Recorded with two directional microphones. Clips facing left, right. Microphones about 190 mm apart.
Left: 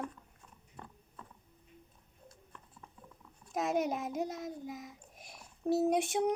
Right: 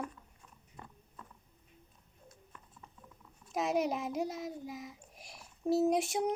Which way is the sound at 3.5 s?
Centre (ahead or behind).